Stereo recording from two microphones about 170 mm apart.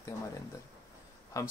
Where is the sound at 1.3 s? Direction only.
20° left (ahead or behind).